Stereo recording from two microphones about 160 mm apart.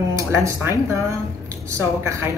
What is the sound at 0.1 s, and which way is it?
A woman's voice, 20° right (ahead or behind).